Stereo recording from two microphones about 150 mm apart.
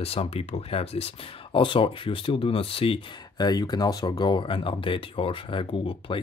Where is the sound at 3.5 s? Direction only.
25° left (ahead or behind).